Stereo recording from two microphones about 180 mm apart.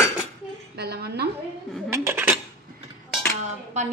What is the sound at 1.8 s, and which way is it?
Cutlery, 10° right (ahead or behind).